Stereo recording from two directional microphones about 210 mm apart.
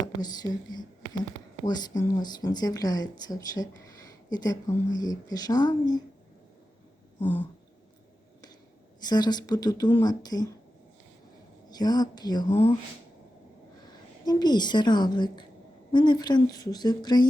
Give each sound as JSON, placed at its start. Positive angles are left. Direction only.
{"t": 0.0, "sound": "speech", "side_deg": 20}
{"t": 7.2, "sound": "speech", "side_deg": 10}
{"t": 9.0, "sound": "speech", "side_deg": 20}
{"t": 11.7, "sound": "speech", "side_deg": 20}
{"t": 14.3, "sound": "speech", "side_deg": 20}